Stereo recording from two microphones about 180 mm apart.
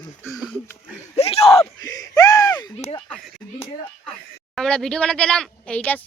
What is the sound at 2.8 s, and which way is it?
Speech, 35° left (ahead or behind).